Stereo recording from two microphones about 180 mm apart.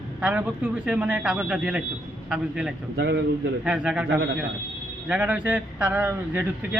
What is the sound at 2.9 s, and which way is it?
Speech, 70° right (ahead or behind).